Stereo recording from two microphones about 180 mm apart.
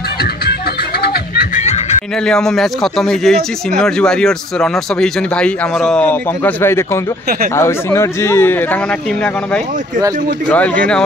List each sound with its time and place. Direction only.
1.0 s a sound: 60° left (ahead or behind)
1.5 s snicker: 40° left (ahead or behind)
2.2 s a man's voice: 5° left (ahead or behind)
10.5 s a man's voice: 5° left (ahead or behind)